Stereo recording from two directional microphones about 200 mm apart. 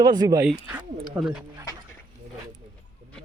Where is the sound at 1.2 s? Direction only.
Centre (ahead or behind).